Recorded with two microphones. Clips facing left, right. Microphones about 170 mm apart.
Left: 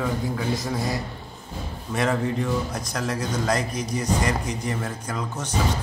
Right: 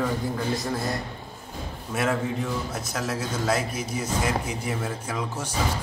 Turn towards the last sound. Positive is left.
turn(degrees=-5)  # may be behind; listen again after turning